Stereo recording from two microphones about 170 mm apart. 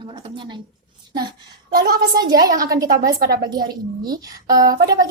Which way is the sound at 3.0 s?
60° right (ahead or behind).